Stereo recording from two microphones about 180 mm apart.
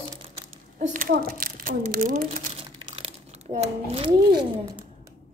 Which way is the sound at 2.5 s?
30° right (ahead or behind).